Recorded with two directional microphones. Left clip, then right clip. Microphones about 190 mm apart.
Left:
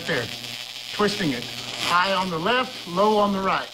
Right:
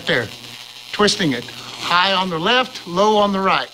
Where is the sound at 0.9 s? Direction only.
55° right (ahead or behind).